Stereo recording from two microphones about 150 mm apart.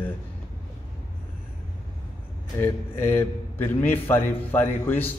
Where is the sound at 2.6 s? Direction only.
15° left (ahead or behind).